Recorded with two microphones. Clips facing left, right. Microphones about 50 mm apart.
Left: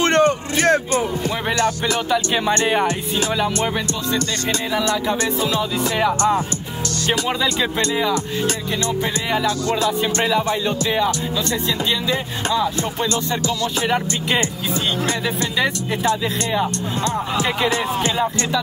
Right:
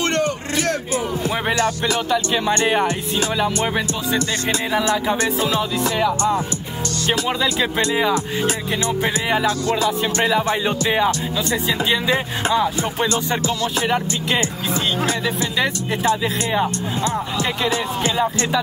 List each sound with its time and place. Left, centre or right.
0.0 s vehicle: left
2.0 s speech: centre
4.7 s music: centre
7.8 s music: centre
9.3 s music: centre
12.1 s music: right
13.8 s speech: centre
15.6 s speech: centre
18.0 s music: centre